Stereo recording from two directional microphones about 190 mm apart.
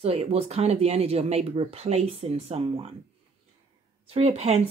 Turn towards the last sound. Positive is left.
turn(degrees=-35)  # may be behind; listen again after turning